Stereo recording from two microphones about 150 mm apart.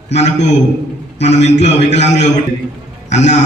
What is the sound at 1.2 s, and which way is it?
A man's voice, 45° left (ahead or behind).